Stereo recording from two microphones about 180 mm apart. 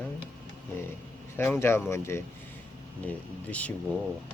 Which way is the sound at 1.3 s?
10° left (ahead or behind).